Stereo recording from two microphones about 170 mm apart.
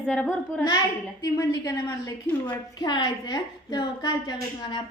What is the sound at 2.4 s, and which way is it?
A woman's voice, 25° left (ahead or behind).